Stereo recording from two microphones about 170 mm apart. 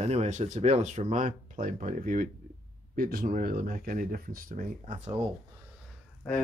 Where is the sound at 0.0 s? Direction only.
40° right (ahead or behind).